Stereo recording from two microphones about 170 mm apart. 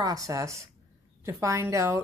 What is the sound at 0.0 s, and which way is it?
A woman's voice, 20° right (ahead or behind).